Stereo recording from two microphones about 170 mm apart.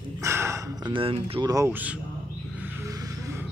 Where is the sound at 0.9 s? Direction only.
30° right (ahead or behind).